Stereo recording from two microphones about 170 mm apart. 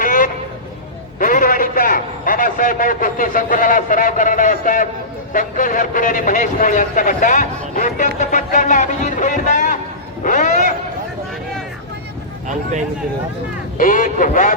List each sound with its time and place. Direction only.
0.0 s a sound: 55° left (ahead or behind)
1.2 s a man's voice: 50° left (ahead or behind)
13.7 s a man's voice: 55° left (ahead or behind)